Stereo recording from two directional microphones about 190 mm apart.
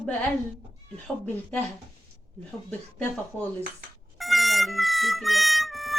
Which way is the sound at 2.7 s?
10° left (ahead or behind).